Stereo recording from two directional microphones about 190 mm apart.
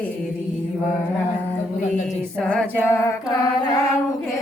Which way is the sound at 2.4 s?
5° left (ahead or behind).